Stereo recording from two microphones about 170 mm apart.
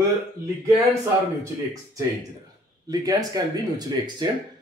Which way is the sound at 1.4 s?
20° right (ahead or behind).